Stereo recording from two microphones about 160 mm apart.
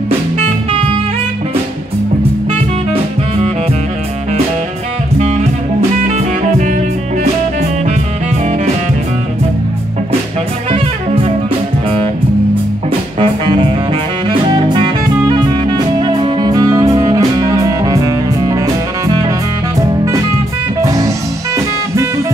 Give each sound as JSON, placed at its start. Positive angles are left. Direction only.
{"t": 0.4, "sound": "music", "side_deg": -35}
{"t": 2.9, "sound": "music", "side_deg": -40}
{"t": 5.2, "sound": "saxophone", "side_deg": -45}
{"t": 10.7, "sound": "music", "side_deg": -35}
{"t": 13.2, "sound": "music", "side_deg": -30}
{"t": 20.8, "sound": "music", "side_deg": -20}